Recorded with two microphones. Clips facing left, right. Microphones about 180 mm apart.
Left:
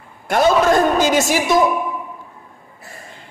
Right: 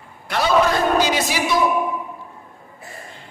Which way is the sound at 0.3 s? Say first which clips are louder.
Left 4 dB; 50° left (ahead or behind).